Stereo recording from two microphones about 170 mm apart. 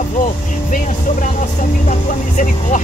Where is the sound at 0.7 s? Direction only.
50° left (ahead or behind).